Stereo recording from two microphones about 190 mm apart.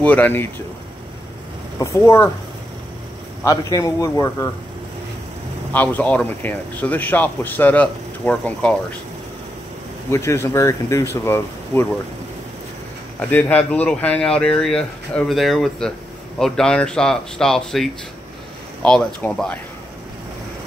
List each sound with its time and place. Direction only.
0.0 s speech: 10° left (ahead or behind)
1.8 s speech: 15° left (ahead or behind)
3.4 s speech: 15° left (ahead or behind)
5.7 s speech: 10° left (ahead or behind)
10.1 s speech: 15° left (ahead or behind)
13.3 s speech: 10° left (ahead or behind)